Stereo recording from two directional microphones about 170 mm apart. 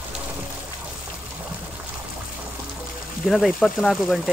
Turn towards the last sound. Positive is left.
turn(degrees=0)  # may be behind; listen again after turning